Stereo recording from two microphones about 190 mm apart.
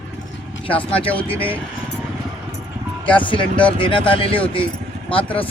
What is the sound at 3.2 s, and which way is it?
Speech, 25° left (ahead or behind).